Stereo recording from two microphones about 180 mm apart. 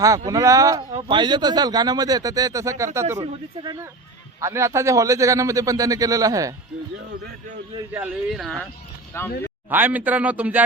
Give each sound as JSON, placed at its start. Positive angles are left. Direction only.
{"t": 0.3, "sound": "a man's voice", "side_deg": -20}
{"t": 7.9, "sound": "speech", "side_deg": -5}
{"t": 9.1, "sound": "speech", "side_deg": 15}
{"t": 9.6, "sound": "a man's voice", "side_deg": -10}